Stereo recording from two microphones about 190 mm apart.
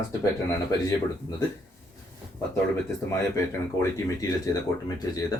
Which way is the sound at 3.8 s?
20° left (ahead or behind).